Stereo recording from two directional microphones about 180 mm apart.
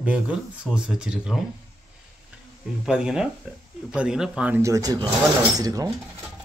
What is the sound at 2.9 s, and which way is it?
Speech, 5° right (ahead or behind).